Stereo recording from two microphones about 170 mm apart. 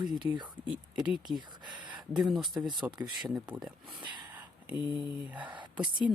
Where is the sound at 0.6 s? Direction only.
5° right (ahead or behind).